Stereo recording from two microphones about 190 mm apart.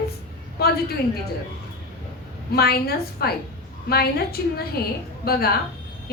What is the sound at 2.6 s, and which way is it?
A woman's voice, 55° left (ahead or behind).